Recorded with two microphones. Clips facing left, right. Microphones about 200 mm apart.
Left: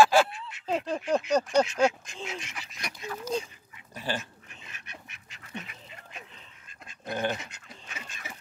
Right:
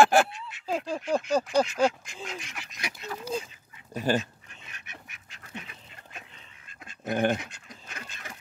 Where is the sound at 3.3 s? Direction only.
Centre (ahead or behind).